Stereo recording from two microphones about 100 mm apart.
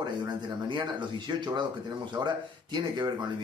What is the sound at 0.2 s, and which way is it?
Speech, 50° right (ahead or behind).